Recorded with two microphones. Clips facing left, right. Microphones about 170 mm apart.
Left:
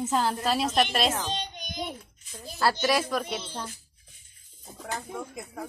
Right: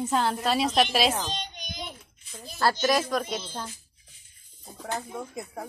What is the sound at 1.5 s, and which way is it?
Child singing, 55° left (ahead or behind).